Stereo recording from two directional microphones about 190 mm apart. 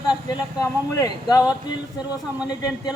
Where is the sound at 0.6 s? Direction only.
15° left (ahead or behind).